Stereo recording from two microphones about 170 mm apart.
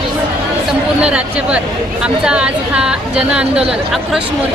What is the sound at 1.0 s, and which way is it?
A woman's voice, 5° right (ahead or behind).